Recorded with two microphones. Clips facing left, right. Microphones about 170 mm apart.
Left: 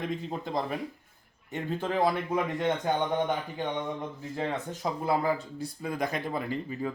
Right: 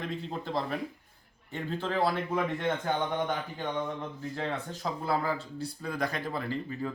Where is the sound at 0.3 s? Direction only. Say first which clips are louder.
Left 1 dB; 15° left (ahead or behind).